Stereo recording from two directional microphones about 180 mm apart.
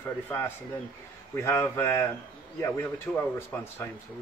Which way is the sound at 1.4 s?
15° left (ahead or behind).